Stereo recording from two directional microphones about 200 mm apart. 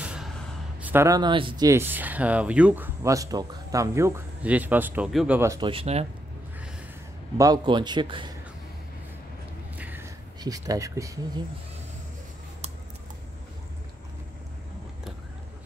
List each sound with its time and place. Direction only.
0.0 s gasp: 5° right (ahead or behind)
0.7 s speech: 10° right (ahead or behind)
5.7 s a man's voice: 30° right (ahead or behind)
7.3 s a man's voice: 20° right (ahead or behind)
9.8 s a sound: 10° right (ahead or behind)